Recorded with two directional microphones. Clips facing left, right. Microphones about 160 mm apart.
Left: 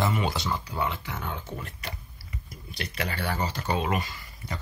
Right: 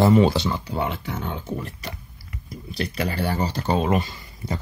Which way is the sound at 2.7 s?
35° right (ahead or behind).